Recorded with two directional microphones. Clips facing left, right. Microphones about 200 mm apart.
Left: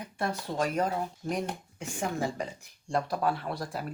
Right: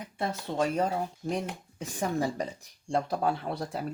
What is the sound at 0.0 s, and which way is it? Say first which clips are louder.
Speech: even; 25° right (ahead or behind).